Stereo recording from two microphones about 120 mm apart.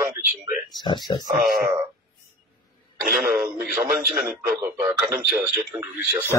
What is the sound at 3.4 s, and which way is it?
A man's voice, 15° right (ahead or behind).